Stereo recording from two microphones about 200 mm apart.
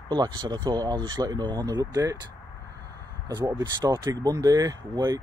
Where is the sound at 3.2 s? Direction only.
20° right (ahead or behind).